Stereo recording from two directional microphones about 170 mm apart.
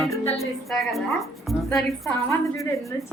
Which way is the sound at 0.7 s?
Centre (ahead or behind).